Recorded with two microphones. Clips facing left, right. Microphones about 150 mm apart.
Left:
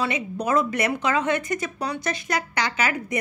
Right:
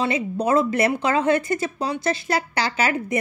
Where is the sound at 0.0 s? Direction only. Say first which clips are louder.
Right 4 dB; 30° right (ahead or behind).